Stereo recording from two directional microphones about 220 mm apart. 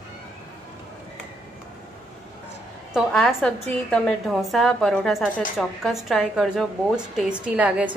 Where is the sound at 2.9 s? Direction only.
5° left (ahead or behind).